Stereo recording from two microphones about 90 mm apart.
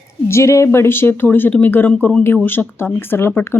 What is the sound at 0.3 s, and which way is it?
Speech, 30° left (ahead or behind).